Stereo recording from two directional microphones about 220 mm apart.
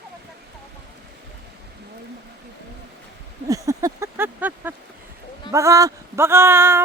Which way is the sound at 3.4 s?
15° right (ahead or behind).